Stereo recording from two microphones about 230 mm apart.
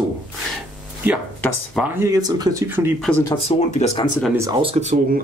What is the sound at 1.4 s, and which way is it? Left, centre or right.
Speech, centre.